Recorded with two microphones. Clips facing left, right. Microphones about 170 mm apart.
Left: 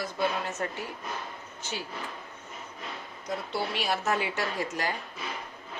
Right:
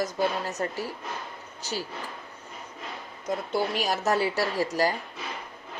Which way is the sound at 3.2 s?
45° right (ahead or behind).